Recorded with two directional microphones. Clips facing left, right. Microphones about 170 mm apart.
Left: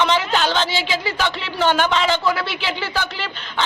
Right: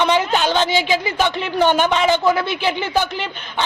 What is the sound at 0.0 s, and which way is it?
A woman's voice, 15° right (ahead or behind).